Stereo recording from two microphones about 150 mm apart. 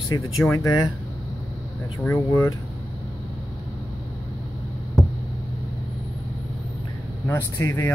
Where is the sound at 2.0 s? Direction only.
20° left (ahead or behind).